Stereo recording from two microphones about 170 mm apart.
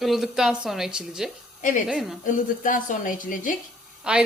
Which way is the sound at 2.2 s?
50° left (ahead or behind).